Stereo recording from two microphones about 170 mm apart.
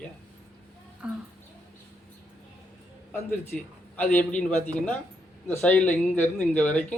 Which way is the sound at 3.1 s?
10° left (ahead or behind).